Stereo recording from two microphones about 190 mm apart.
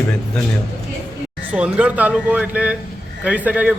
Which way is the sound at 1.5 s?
5° right (ahead or behind).